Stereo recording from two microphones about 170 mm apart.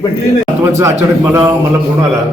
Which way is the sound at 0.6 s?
15° right (ahead or behind).